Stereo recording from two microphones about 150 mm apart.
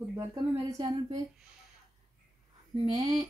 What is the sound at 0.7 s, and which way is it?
Speech, 25° right (ahead or behind).